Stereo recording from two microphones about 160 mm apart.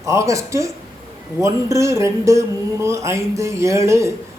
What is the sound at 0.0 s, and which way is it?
Speech, 20° right (ahead or behind).